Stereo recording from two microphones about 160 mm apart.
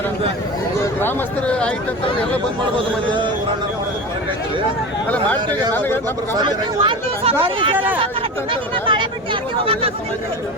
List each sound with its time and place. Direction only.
0.9 s speech: 10° left (ahead or behind)
5.7 s speech: 15° left (ahead or behind)
6.3 s speech: 30° right (ahead or behind)
8.9 s speech: 30° right (ahead or behind)